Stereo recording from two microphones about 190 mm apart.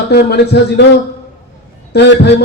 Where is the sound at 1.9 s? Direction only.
60° left (ahead or behind).